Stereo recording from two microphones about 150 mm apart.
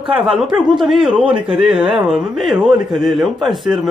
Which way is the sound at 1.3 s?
35° right (ahead or behind).